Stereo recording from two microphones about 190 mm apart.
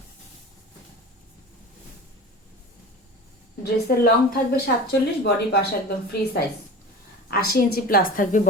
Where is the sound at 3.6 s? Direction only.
55° left (ahead or behind).